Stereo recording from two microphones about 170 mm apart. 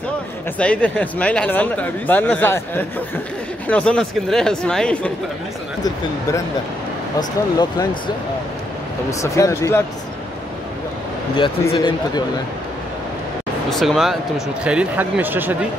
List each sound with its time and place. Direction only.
0.6 s speech: 5° left (ahead or behind)
7.2 s speech: 25° left (ahead or behind)
9.2 s speech: 20° left (ahead or behind)
11.7 s speech: 30° left (ahead or behind)
13.7 s speech: centre (ahead or behind)